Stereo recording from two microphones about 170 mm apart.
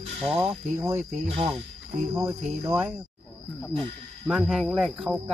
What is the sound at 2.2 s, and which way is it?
Cricket, 10° right (ahead or behind).